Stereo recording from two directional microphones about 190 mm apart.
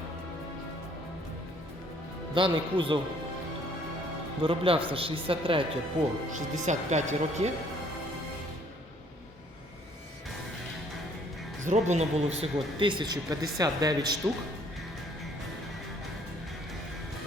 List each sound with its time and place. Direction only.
2.3 s a man's voice: 25° right (ahead or behind)
4.4 s a man's voice: 30° right (ahead or behind)
6.3 s speech: 40° right (ahead or behind)
11.6 s a man's voice: 40° right (ahead or behind); by 14.2 s 20° right (ahead or behind)